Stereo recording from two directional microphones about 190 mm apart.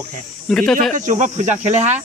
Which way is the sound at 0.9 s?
40° right (ahead or behind).